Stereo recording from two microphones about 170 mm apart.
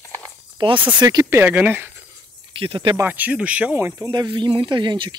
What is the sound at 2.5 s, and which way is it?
Speech, 30° right (ahead or behind).